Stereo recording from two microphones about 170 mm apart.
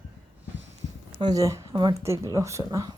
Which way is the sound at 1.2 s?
20° right (ahead or behind).